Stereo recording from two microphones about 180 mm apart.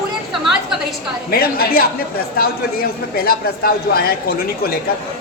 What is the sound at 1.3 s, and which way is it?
Speech, 55° left (ahead or behind).